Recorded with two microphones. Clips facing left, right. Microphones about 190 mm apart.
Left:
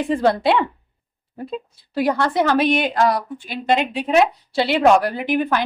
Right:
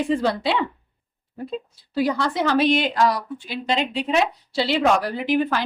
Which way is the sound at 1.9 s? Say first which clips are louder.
Left 3 dB; 55° left (ahead or behind).